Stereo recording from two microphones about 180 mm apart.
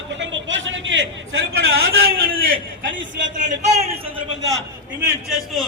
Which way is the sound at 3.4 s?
40° right (ahead or behind).